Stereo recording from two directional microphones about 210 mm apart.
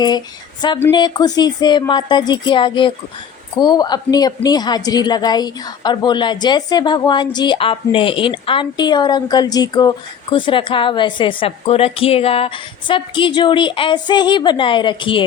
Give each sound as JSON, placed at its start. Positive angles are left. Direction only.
{"t": 0.8, "sound": "a woman's voice", "side_deg": 20}